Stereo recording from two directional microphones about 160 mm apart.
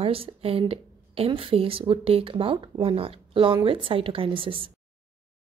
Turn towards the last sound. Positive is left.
turn(degrees=-35)  # may be behind; listen again after turning